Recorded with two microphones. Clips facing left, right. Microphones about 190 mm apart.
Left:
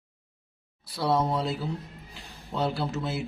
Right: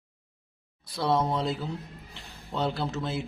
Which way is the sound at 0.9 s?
5° left (ahead or behind).